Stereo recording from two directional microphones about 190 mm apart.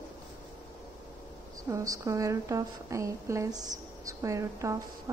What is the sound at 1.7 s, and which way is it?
A woman's voice, 15° right (ahead or behind).